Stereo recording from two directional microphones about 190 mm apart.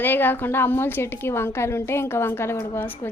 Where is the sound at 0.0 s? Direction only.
10° left (ahead or behind).